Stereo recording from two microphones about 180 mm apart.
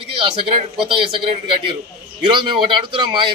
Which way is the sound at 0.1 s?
30° right (ahead or behind).